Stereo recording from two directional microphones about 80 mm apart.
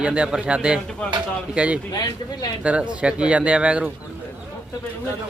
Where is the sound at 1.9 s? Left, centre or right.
Left.